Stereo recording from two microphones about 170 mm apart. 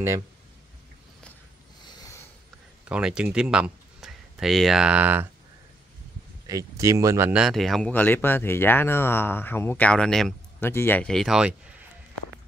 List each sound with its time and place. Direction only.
2.9 s speech: 5° right (ahead or behind)
6.4 s speech: 20° right (ahead or behind)
7.3 s speech: centre (ahead or behind)
10.6 s speech: 15° left (ahead or behind); by 11.7 s 5° right (ahead or behind)